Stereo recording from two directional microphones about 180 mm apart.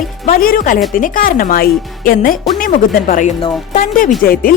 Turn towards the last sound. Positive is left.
turn(degrees=50)  # may be behind; listen again after turning